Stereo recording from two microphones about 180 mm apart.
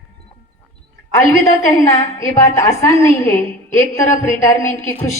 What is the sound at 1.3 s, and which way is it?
A woman's voice, 15° left (ahead or behind).